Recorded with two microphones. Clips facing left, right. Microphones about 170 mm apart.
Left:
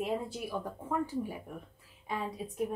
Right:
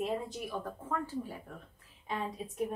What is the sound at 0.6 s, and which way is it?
Speech, 15° left (ahead or behind).